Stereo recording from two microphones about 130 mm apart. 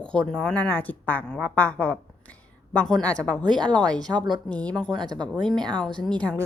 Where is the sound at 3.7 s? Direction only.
30° right (ahead or behind).